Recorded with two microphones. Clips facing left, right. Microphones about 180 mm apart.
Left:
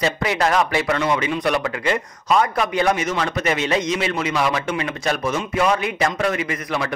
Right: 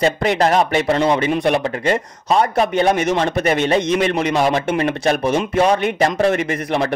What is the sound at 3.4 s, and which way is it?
Speech, 55° right (ahead or behind).